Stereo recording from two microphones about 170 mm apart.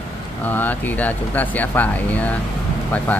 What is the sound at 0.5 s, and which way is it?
Speech, 10° left (ahead or behind).